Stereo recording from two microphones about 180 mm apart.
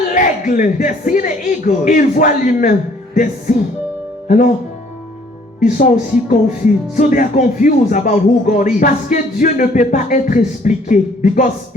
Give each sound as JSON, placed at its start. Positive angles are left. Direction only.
{"t": 0.1, "sound": "speech", "side_deg": 45}
{"t": 5.6, "sound": "speech", "side_deg": 45}